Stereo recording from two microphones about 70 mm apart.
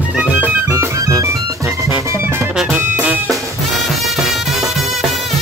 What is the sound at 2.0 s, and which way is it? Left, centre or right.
Music, right.